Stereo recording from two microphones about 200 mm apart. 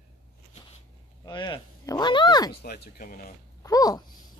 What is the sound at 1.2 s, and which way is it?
A woman's voice, 20° left (ahead or behind).